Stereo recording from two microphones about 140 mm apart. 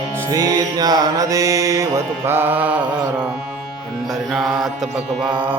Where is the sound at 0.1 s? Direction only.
25° right (ahead or behind).